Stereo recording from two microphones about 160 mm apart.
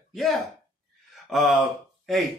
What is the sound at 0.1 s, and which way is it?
Speech, centre (ahead or behind).